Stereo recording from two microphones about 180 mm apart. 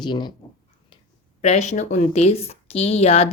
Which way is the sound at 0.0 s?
25° left (ahead or behind).